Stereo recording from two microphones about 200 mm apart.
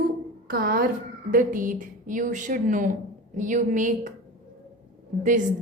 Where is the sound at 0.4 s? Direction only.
45° right (ahead or behind).